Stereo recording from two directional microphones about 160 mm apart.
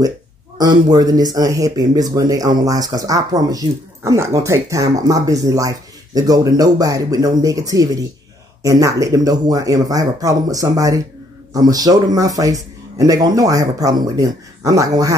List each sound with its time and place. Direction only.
0.6 s speech: 25° right (ahead or behind)